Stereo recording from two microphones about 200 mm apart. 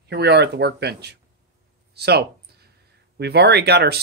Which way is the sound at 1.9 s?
55° right (ahead or behind).